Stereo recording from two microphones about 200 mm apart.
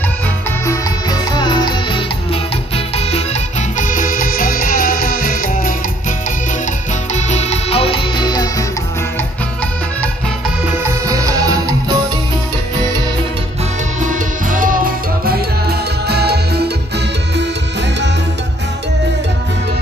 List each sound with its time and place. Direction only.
1.3 s music: 20° left (ahead or behind)
3.8 s music: 40° left (ahead or behind)
7.2 s music: 35° left (ahead or behind)
10.8 s music: 15° right (ahead or behind)
14.0 s music: 40° right (ahead or behind)
16.1 s music: 55° right (ahead or behind)